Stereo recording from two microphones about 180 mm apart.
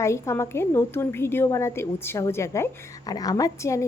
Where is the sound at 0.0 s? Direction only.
15° left (ahead or behind).